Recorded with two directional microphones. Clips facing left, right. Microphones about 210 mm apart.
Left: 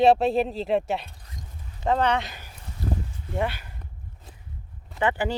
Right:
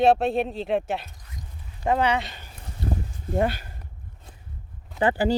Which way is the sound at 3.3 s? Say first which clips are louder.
Right 4 dB; 40° right (ahead or behind).